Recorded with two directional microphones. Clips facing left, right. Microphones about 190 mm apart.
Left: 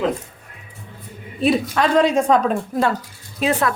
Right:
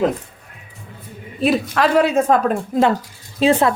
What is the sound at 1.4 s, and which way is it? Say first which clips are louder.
Speech: right 1 dB; centre (ahead or behind).